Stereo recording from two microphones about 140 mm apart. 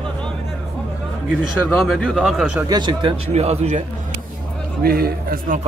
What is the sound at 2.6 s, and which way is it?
Speech, 30° right (ahead or behind).